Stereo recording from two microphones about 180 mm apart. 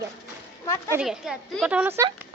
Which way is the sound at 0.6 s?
15° left (ahead or behind).